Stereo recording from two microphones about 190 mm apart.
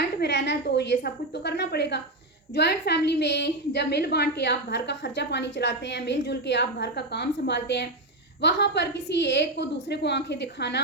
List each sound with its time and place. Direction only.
0.2 s a woman's voice: 70° left (ahead or behind)